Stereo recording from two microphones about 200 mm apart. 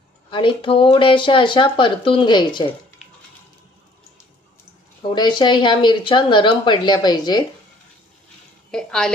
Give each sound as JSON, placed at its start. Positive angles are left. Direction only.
{"t": 0.3, "sound": "speech", "side_deg": 25}
{"t": 5.1, "sound": "speech", "side_deg": 20}
{"t": 8.7, "sound": "a woman's voice", "side_deg": 0}